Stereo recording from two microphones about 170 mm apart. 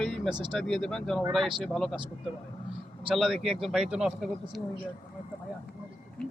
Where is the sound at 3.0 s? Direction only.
Centre (ahead or behind).